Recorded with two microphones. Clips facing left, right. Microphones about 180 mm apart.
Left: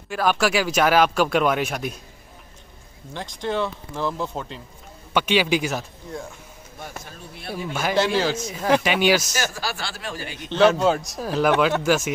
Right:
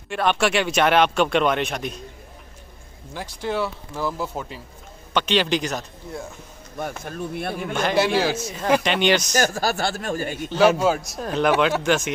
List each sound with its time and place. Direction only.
0.1 s speech: centre (ahead or behind)
3.1 s speech: 10° right (ahead or behind)
5.1 s a man's voice: 10° left (ahead or behind)
6.8 s speech: 55° right (ahead or behind)
7.9 s speech: 10° right (ahead or behind)
8.5 s speech: centre (ahead or behind)
9.3 s a man's voice: 45° right (ahead or behind)
10.5 s speech: 5° right (ahead or behind)